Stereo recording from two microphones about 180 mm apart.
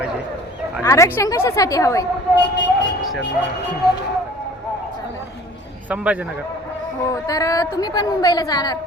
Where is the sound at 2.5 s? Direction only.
80° left.